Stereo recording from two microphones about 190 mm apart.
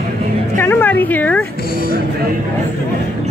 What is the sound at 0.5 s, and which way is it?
Speech, 10° left (ahead or behind).